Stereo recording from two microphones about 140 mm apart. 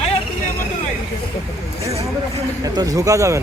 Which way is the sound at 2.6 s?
25° right (ahead or behind).